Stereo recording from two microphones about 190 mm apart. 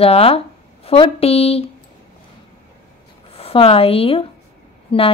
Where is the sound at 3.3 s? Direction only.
30° left (ahead or behind).